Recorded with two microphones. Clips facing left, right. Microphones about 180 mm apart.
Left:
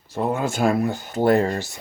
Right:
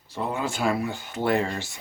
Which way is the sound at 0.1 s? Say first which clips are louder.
Left 5 dB; 45° left (ahead or behind).